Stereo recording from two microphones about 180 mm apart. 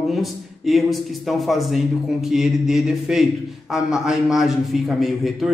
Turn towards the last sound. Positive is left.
turn(degrees=0)  # may be behind; listen again after turning